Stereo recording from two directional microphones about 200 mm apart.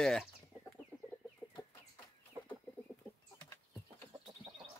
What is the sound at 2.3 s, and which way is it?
Chicken, 15° right (ahead or behind).